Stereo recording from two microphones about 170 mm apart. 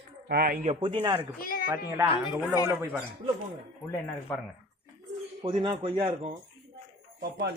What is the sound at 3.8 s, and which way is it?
Speech, 15° left (ahead or behind).